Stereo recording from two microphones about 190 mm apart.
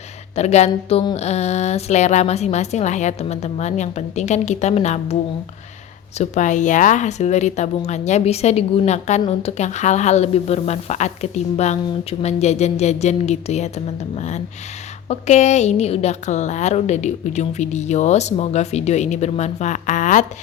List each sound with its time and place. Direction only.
0.3 s speech: 35° left (ahead or behind)
6.1 s speech: 40° left (ahead or behind)